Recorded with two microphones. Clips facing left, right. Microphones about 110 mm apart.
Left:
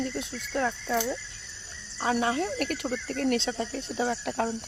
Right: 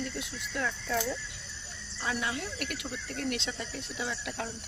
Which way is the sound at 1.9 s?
40° left (ahead or behind).